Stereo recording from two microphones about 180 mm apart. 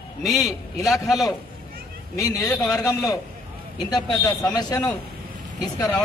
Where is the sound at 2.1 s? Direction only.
20° left (ahead or behind).